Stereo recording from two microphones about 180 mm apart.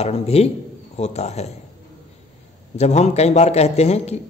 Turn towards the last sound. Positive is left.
turn(degrees=35)  # may be behind; listen again after turning